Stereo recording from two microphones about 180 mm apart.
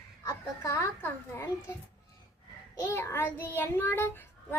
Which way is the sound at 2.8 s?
15° left (ahead or behind).